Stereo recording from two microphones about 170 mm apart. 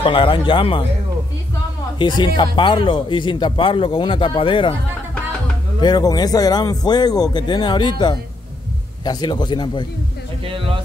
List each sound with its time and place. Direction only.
0.0 s a man's voice: 30° left (ahead or behind)
2.0 s a man's voice: 25° left (ahead or behind)
5.8 s a man's voice: 25° left (ahead or behind)